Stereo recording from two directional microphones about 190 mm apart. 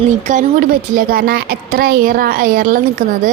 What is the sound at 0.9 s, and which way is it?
A woman's voice, 50° right (ahead or behind).